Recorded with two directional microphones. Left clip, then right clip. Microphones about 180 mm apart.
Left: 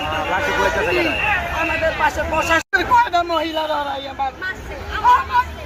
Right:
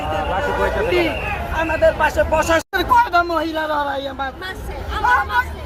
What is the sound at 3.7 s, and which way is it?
Speech, 25° right (ahead or behind).